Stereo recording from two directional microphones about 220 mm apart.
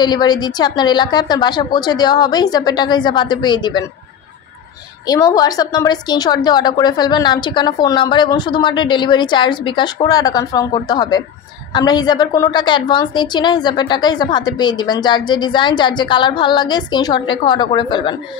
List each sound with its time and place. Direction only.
0.0 s a woman's voice: 20° left (ahead or behind)
5.0 s a woman's voice: 15° left (ahead or behind)